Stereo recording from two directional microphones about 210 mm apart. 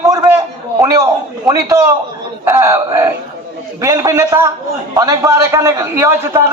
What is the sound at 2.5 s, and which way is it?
A man's voice, 15° right (ahead or behind).